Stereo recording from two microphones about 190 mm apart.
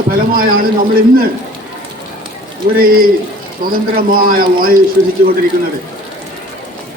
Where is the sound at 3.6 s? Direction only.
50° right (ahead or behind).